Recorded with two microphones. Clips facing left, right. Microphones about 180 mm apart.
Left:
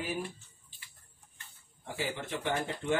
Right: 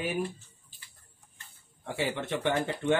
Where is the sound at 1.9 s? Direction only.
70° right (ahead or behind).